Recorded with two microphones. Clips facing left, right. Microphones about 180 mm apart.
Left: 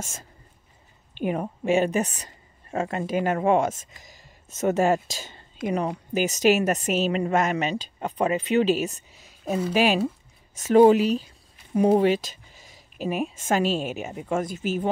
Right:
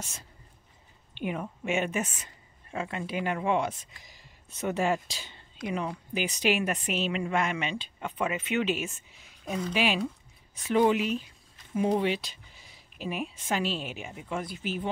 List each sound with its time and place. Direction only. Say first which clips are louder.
0.0 s a woman's voice: left 5 dB; 45° left (ahead or behind)